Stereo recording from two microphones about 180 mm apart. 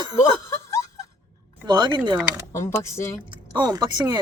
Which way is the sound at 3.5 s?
25° right (ahead or behind).